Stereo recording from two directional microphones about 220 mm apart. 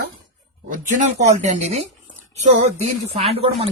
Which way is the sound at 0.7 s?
35° right (ahead or behind).